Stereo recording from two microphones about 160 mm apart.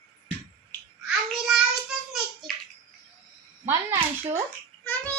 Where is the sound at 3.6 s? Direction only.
15° right (ahead or behind).